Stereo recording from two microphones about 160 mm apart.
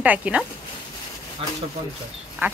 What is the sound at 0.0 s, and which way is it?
Speech, 10° right (ahead or behind).